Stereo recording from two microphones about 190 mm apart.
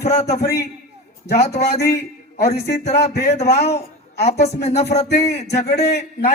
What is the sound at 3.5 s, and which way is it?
Speech, 35° left (ahead or behind).